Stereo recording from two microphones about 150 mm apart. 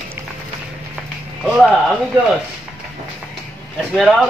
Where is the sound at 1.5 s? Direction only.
5° right (ahead or behind).